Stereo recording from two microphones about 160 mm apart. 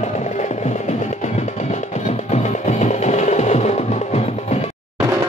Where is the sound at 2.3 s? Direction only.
45° left (ahead or behind).